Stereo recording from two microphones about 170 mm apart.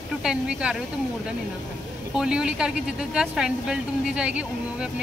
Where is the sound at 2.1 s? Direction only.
5° right (ahead or behind).